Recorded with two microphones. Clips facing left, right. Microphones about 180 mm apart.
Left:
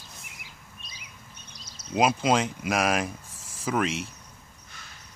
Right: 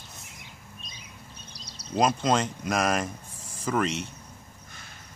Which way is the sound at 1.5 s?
35° right (ahead or behind).